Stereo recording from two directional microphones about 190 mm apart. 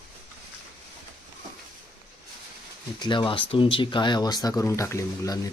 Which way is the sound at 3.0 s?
25° left (ahead or behind).